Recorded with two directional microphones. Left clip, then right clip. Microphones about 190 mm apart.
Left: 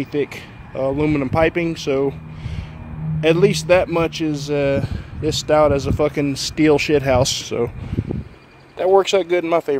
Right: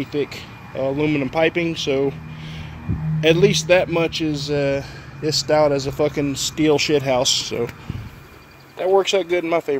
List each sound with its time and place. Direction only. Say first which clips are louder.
0.0 s speech: left 2 dB; 15° left (ahead or behind)
8.7 s speech: left 2 dB; 20° left (ahead or behind)